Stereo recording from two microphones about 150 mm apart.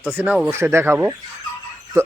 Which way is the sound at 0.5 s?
15° right (ahead or behind).